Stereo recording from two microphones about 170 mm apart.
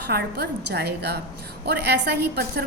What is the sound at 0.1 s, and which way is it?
A woman's voice, 70° right (ahead or behind).